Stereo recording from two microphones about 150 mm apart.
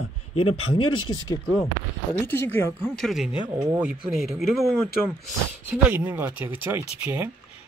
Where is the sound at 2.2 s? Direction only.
15° left (ahead or behind).